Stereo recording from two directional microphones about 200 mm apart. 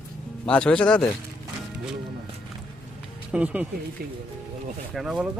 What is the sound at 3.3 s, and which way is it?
Speech, 5° right (ahead or behind).